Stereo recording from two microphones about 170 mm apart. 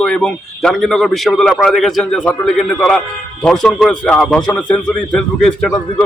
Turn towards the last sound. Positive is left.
turn(degrees=5)  # may be behind; listen again after turning